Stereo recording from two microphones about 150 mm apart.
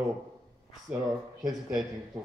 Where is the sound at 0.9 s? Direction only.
10° right (ahead or behind).